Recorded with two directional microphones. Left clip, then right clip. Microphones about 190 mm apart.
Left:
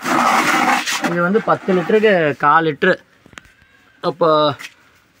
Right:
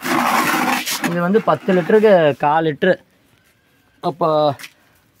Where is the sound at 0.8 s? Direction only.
65° right (ahead or behind).